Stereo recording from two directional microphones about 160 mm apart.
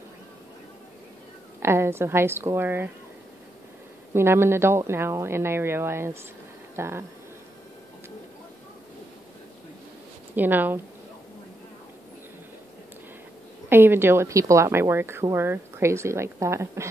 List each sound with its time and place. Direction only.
1.6 s speech: 15° right (ahead or behind)
4.1 s speech: 15° right (ahead or behind)
10.3 s speech: 10° right (ahead or behind)
13.7 s speech: 15° right (ahead or behind)